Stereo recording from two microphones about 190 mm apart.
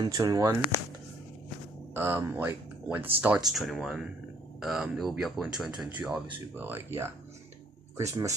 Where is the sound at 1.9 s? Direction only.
10° right (ahead or behind).